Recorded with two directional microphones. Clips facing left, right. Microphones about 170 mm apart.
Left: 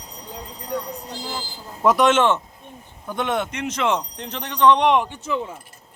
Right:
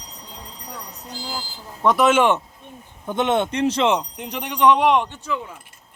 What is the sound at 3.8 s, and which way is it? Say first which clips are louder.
Speech: right 2 dB; 15° right (ahead or behind).